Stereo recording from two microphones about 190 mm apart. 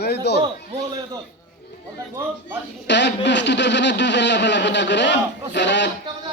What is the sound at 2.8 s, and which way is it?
A man's voice, 65° left (ahead or behind).